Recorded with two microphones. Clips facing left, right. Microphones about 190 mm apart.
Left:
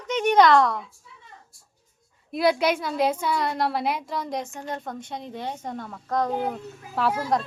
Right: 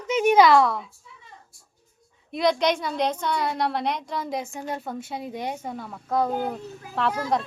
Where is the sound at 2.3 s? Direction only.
5° left (ahead or behind).